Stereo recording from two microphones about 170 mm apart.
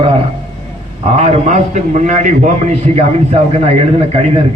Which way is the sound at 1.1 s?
40° right (ahead or behind).